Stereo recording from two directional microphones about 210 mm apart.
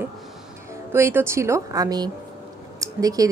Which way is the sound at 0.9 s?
10° right (ahead or behind).